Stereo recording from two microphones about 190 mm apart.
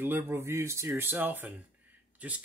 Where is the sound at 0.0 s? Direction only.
10° right (ahead or behind).